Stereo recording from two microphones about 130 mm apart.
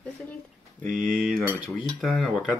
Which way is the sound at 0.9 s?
90° right.